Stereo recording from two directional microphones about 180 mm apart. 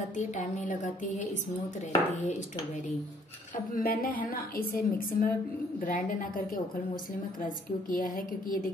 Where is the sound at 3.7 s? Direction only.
55° left (ahead or behind).